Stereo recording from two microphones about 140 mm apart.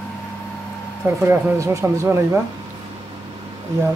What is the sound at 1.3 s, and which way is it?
Speech, 20° right (ahead or behind).